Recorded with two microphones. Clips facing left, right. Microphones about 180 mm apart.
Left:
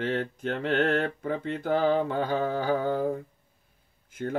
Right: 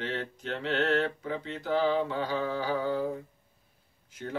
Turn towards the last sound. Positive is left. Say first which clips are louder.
# left 6 dB
turn(degrees=50)  # may be behind; listen again after turning